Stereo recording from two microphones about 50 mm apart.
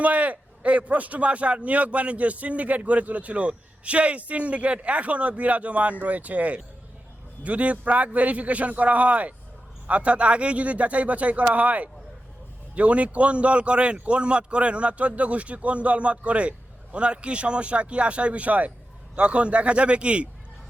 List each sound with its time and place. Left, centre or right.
0.0 s a man's voice: right